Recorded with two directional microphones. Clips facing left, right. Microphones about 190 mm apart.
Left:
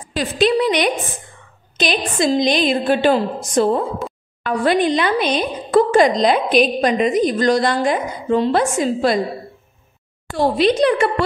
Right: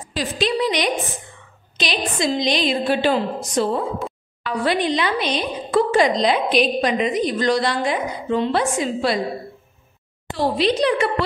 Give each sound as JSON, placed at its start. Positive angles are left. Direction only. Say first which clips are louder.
{"t": 0.1, "sound": "a woman's voice", "louder": "left 5 dB", "side_deg": 55}
{"t": 10.3, "sound": "a woman's voice", "louder": "left 4 dB", "side_deg": 50}